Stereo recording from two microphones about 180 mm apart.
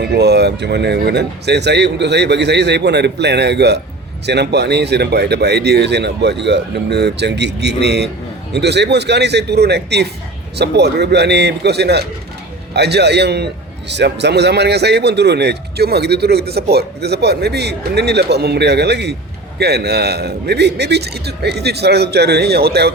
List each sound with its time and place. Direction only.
0.0 s a man's voice: 65° right (ahead or behind)